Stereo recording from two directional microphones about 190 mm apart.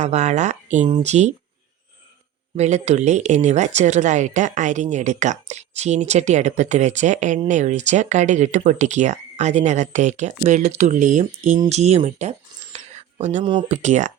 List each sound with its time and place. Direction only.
0.0 s speech: 35° right (ahead or behind)
2.6 s speech: 35° right (ahead or behind)
11.7 s a sound: 35° right (ahead or behind)
13.7 s speech: 40° right (ahead or behind)